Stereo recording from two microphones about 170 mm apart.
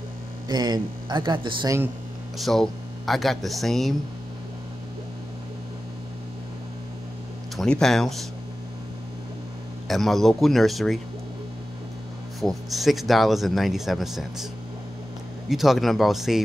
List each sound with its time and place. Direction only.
0.5 s speech: 25° right (ahead or behind)
2.3 s speech: centre (ahead or behind)
7.5 s speech: 5° left (ahead or behind)
9.8 s speech: centre (ahead or behind)
12.4 s speech: centre (ahead or behind)
15.5 s speech: centre (ahead or behind)